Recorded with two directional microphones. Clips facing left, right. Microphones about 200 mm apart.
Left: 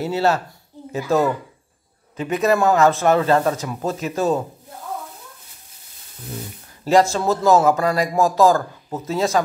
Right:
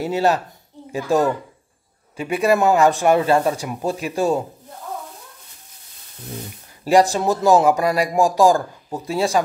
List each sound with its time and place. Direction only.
0.0 s speech: 15° right (ahead or behind)
6.8 s speech: 15° right (ahead or behind)